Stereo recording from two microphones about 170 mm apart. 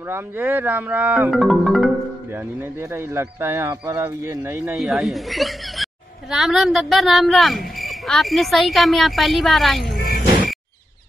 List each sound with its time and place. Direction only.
0.1 s speech: 10° right (ahead or behind)
1.3 s speech: centre (ahead or behind)
3.2 s speech: 15° right (ahead or behind)
4.7 s speech: centre (ahead or behind)
9.9 s music: 55° left (ahead or behind)